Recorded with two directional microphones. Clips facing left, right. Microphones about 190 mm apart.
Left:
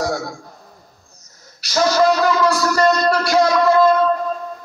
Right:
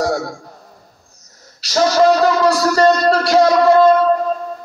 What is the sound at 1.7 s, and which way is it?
Music, 35° right (ahead or behind).